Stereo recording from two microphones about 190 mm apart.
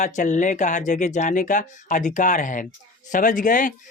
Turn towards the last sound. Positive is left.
turn(degrees=45)  # may be behind; listen again after turning